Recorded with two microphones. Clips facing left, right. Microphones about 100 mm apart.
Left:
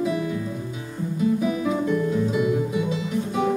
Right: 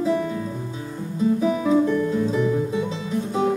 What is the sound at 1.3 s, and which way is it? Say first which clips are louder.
Guitar: right 2 dB; 30° right (ahead or behind).